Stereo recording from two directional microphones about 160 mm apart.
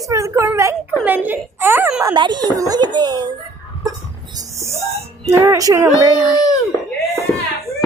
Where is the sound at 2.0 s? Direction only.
25° right (ahead or behind).